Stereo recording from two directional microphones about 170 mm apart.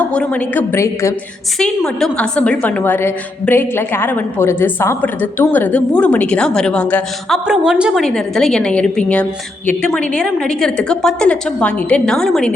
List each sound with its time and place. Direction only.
0.0 s a woman's voice: 5° left (ahead or behind)
1.5 s a woman's voice: centre (ahead or behind)
7.4 s a woman's voice: 5° right (ahead or behind)